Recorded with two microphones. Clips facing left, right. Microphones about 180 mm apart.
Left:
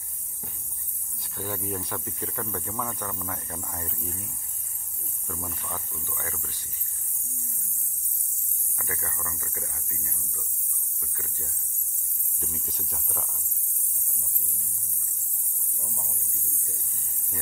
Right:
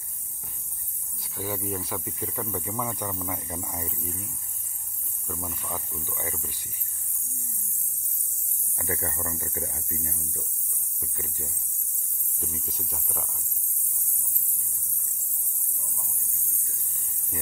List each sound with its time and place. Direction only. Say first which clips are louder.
1.3 s speech: right 1 dB; centre (ahead or behind)
5.3 s speech: right 2 dB; 5° right (ahead or behind)
8.7 s speech: right 6 dB; 25° right (ahead or behind)
11.0 s speech: right 4 dB; 15° right (ahead or behind)
12.4 s speech: right 1 dB; centre (ahead or behind)